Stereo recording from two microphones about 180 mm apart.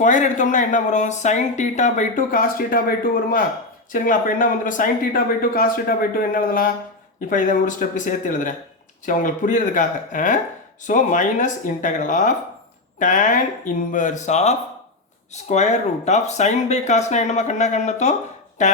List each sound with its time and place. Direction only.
0.0 s speech: 45° left (ahead or behind)